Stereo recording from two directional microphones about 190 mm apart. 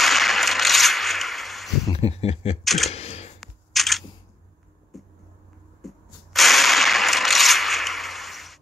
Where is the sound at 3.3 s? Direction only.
Centre (ahead or behind).